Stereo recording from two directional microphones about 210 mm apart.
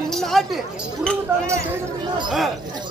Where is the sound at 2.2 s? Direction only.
Centre (ahead or behind).